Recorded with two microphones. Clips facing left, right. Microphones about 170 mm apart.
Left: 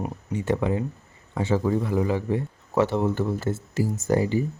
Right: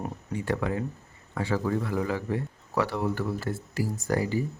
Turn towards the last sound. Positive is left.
turn(degrees=20)  # may be behind; listen again after turning